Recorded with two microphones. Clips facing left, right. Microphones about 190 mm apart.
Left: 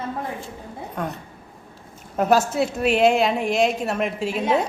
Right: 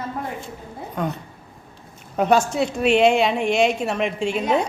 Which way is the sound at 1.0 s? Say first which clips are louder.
Right 3 dB; centre (ahead or behind).